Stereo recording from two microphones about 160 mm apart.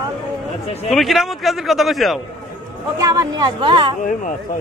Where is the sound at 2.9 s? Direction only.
20° right (ahead or behind).